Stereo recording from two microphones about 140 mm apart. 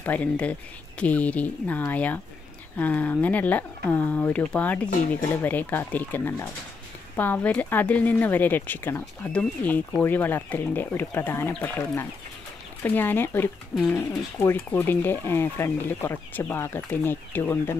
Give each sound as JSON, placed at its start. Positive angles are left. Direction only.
{"t": 0.0, "sound": "speech", "side_deg": 10}